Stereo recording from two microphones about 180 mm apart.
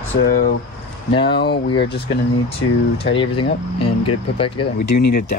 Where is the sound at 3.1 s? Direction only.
30° left (ahead or behind).